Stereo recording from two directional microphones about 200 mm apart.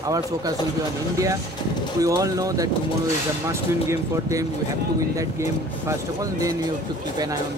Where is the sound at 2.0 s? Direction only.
15° right (ahead or behind).